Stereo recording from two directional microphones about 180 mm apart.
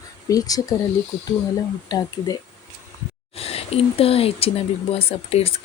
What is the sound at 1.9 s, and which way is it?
Speech, 20° left (ahead or behind).